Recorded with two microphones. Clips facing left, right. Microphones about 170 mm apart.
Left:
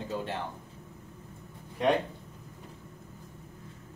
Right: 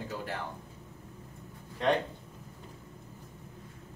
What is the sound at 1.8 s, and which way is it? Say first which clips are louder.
Speech: left 2 dB; 15° left (ahead or behind).